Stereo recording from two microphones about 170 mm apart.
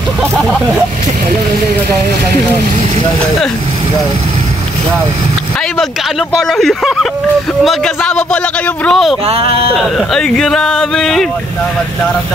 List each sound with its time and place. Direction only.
6.4 s speech: centre (ahead or behind)
9.2 s speech: 35° right (ahead or behind)
9.8 s speech: centre (ahead or behind)